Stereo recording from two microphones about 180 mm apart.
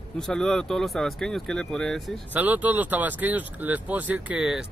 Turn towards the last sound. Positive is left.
turn(degrees=-5)  # may be behind; listen again after turning